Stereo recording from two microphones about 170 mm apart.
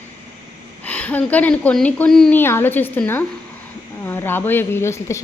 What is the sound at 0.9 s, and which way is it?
A woman's voice, 10° left (ahead or behind).